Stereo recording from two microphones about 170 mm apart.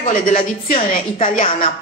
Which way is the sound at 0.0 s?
50° left (ahead or behind).